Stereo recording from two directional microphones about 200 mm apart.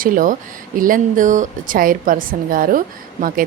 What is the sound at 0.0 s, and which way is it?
A woman's voice, 40° right (ahead or behind).